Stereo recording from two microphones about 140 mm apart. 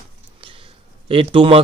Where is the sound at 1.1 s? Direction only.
40° right (ahead or behind).